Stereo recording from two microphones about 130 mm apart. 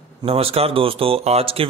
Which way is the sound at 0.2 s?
45° right (ahead or behind).